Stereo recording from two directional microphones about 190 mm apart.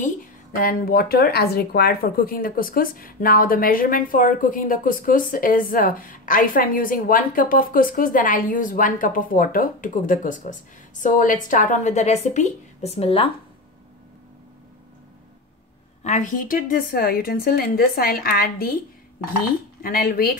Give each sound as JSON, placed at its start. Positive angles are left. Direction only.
{"t": 0.6, "sound": "a woman's voice", "side_deg": 50}
{"t": 16.0, "sound": "speech", "side_deg": 40}
{"t": 19.8, "sound": "speech", "side_deg": 50}